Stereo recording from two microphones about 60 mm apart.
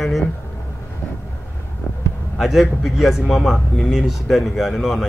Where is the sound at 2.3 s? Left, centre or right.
Centre.